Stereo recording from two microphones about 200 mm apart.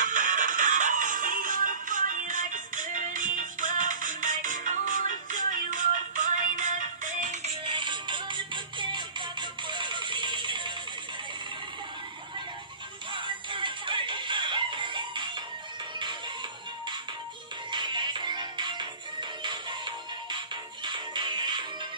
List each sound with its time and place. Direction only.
0.0 s music: 40° right (ahead or behind)
7.6 s music: 25° right (ahead or behind)
13.1 s music: 25° right (ahead or behind)
17.6 s music: 25° right (ahead or behind)